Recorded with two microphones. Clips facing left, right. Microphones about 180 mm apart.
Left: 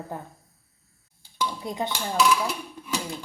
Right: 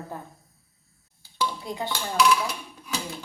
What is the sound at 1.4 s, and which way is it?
Dishes, 20° left (ahead or behind).